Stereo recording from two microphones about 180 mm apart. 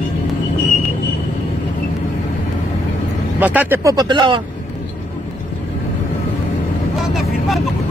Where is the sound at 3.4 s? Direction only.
10° right (ahead or behind); by 4.4 s 25° right (ahead or behind).